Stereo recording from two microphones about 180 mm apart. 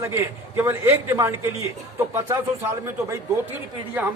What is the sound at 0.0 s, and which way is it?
A man's voice, 15° right (ahead or behind).